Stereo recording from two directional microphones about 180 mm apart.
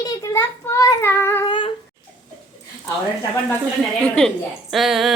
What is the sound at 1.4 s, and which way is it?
Speech, 25° left (ahead or behind).